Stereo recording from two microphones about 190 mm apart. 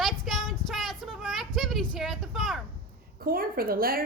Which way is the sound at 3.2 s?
50° right (ahead or behind).